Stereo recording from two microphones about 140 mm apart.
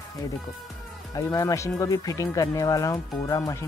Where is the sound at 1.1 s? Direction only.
25° left (ahead or behind).